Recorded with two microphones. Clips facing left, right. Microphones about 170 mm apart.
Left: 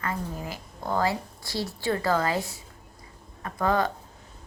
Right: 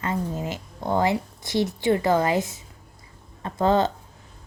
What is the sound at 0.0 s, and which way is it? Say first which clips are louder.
A woman's voice: right 5 dB; 25° right (ahead or behind).